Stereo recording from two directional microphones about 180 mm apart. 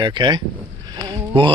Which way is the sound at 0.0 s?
25° right (ahead or behind).